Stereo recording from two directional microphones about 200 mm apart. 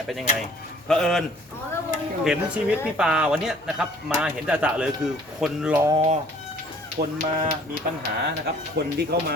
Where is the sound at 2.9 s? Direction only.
5° right (ahead or behind).